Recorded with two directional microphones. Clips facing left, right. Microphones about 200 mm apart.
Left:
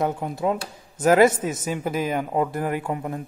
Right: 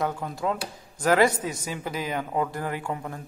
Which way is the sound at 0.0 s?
20° left (ahead or behind).